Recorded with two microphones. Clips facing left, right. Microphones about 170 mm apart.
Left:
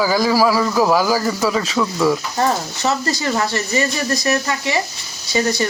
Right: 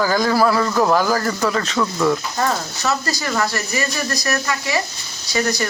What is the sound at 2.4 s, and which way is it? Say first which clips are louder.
Speech: left 3 dB; 20° left (ahead or behind).